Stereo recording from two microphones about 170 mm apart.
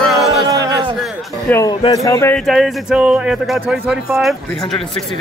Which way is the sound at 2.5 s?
5° right (ahead or behind).